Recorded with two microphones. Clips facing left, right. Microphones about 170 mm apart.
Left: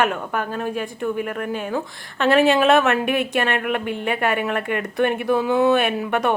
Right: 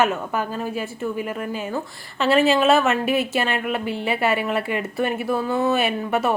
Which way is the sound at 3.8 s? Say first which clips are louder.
Even; 55° left (ahead or behind).